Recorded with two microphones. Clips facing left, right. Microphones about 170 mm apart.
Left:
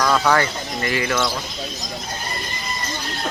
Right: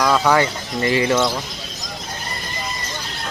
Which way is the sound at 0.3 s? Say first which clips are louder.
Right 2 dB; 25° right (ahead or behind).